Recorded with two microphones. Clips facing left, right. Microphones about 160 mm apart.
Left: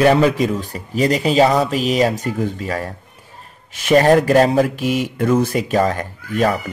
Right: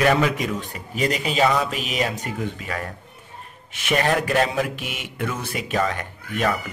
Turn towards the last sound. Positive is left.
turn(degrees=35)  # may be behind; listen again after turning